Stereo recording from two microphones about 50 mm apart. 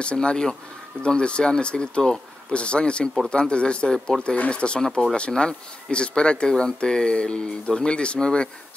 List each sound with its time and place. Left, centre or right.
0.0 s speech: left